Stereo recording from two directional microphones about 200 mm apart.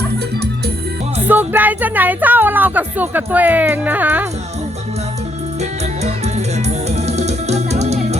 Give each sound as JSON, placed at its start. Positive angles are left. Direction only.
{"t": 1.3, "sound": "speech", "side_deg": -10}
{"t": 6.0, "sound": "music", "side_deg": -35}